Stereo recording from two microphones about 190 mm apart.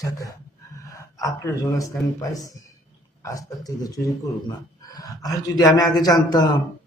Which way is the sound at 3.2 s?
20° left (ahead or behind).